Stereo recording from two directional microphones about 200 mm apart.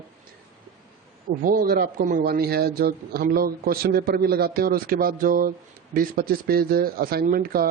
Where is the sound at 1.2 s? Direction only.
45° right (ahead or behind).